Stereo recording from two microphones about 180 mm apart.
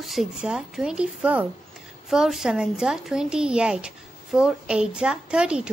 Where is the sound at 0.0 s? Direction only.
Centre (ahead or behind).